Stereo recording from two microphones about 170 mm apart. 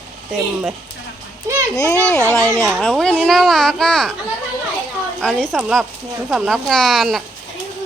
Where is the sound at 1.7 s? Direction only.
20° left (ahead or behind).